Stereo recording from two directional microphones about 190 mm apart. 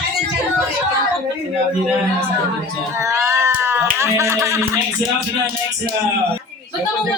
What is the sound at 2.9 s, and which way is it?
Speech, 15° right (ahead or behind).